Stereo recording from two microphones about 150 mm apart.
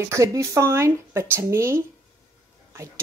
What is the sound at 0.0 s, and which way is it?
Speech, 20° right (ahead or behind).